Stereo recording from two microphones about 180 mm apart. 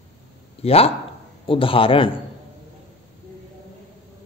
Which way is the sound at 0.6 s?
35° left (ahead or behind).